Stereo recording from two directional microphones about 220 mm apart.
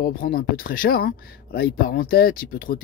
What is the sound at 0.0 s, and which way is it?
Speech, 40° left (ahead or behind).